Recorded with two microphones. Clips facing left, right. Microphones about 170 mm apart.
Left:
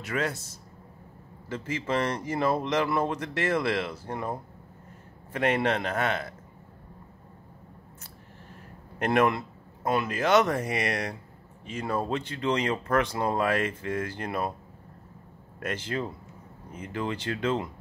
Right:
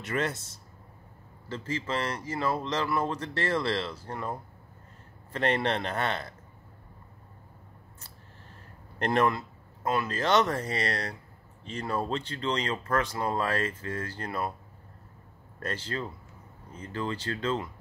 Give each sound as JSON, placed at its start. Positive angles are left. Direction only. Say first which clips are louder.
{"t": 0.0, "sound": "a man's voice", "louder": "even", "side_deg": 0}
{"t": 2.2, "sound": "speech", "louder": "left 4 dB", "side_deg": 20}
{"t": 8.9, "sound": "speech", "louder": "left 2 dB", "side_deg": 10}
{"t": 15.6, "sound": "speech", "louder": "left 3 dB", "side_deg": 15}